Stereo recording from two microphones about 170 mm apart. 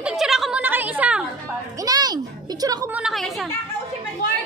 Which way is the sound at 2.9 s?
Centre (ahead or behind).